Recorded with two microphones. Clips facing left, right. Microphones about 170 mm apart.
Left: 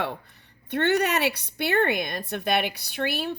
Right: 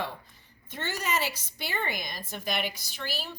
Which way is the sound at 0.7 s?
65° left (ahead or behind).